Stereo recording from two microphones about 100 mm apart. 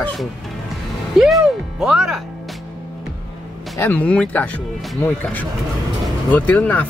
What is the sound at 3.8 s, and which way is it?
Speech, 15° left (ahead or behind).